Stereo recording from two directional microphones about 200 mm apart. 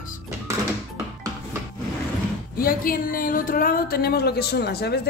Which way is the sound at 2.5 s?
45° left (ahead or behind).